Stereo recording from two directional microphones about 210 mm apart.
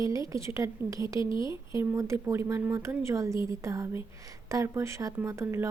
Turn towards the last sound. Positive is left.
turn(degrees=-10)  # may be behind; listen again after turning